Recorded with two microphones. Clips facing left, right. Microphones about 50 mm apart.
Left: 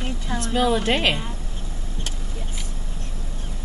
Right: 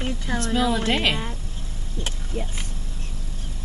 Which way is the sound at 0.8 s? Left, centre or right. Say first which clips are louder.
Left 1 dB; centre.